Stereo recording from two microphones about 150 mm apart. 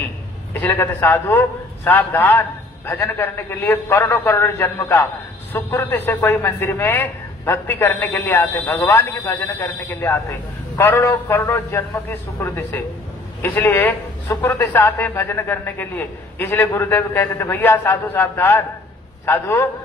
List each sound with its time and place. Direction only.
0.5 s a man's voice: 15° left (ahead or behind)